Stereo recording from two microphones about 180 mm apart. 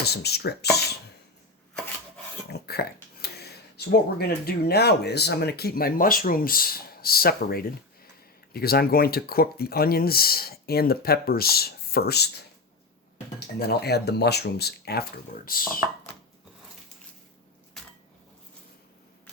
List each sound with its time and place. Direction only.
0.0 s speech: 65° left (ahead or behind)
2.5 s speech: 60° left (ahead or behind)
13.6 s speech: 60° left (ahead or behind)